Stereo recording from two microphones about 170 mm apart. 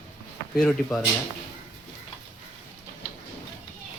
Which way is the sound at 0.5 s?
Centre (ahead or behind).